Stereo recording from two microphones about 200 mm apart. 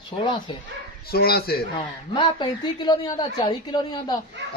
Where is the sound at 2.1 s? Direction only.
20° left (ahead or behind).